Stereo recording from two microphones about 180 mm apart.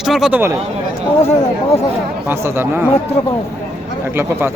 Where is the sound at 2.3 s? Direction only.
15° right (ahead or behind).